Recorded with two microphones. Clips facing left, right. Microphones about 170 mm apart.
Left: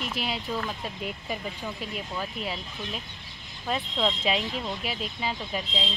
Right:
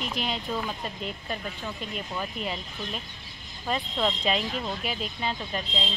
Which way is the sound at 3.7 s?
Centre (ahead or behind).